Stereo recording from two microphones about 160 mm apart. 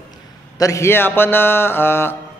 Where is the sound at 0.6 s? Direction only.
20° left (ahead or behind).